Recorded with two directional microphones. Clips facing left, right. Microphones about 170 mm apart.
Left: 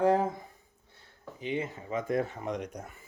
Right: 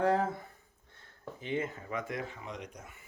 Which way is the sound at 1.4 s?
15° left (ahead or behind).